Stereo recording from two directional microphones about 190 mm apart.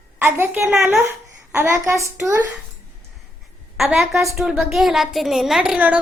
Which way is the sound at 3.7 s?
Centre (ahead or behind).